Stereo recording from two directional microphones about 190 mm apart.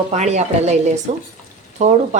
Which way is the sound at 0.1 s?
35° right (ahead or behind).